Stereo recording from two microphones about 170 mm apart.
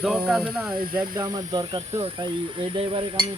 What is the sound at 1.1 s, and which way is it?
Speech, 20° right (ahead or behind).